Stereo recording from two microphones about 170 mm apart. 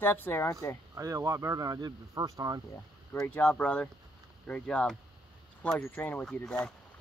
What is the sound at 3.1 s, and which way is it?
Speech, 10° left (ahead or behind).